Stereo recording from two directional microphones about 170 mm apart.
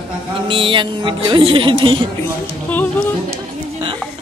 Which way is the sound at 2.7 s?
10° left (ahead or behind).